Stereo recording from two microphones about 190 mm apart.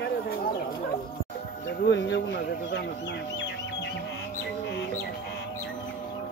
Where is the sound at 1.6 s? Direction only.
65° left (ahead or behind).